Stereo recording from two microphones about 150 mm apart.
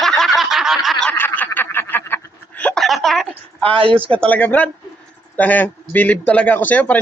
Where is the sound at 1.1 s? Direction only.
15° left (ahead or behind).